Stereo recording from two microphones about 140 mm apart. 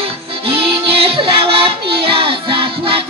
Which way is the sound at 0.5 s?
40° right (ahead or behind).